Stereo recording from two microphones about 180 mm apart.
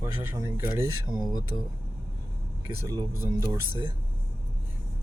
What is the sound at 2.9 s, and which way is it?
Speech, 15° right (ahead or behind).